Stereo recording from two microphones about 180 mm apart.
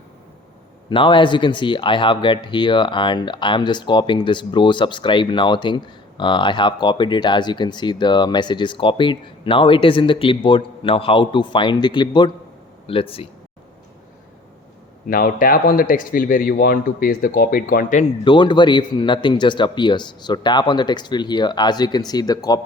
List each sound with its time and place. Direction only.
0.9 s speech: 30° left (ahead or behind)
15.1 s speech: 50° left (ahead or behind)
18.3 s speech: 25° left (ahead or behind)